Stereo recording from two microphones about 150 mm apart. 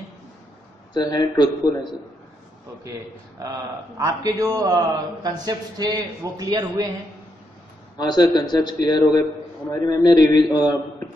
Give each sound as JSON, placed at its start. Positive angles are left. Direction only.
{"t": 0.9, "sound": "a man's voice", "side_deg": 25}
{"t": 3.4, "sound": "a man's voice", "side_deg": -20}
{"t": 8.0, "sound": "a man's voice", "side_deg": 30}